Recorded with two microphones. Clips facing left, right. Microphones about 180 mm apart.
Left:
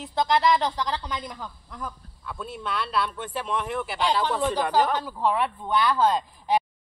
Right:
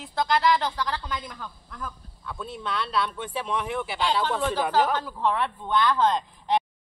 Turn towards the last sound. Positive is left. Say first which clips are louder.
# left 1 dB
turn(degrees=10)  # may be behind; listen again after turning